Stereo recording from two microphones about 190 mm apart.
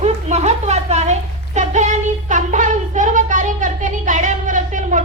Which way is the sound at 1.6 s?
40° right (ahead or behind).